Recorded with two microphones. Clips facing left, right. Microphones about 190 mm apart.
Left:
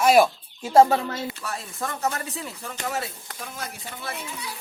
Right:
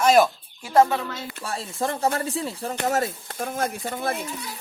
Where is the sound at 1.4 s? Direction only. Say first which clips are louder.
Right 4 dB; 30° right (ahead or behind).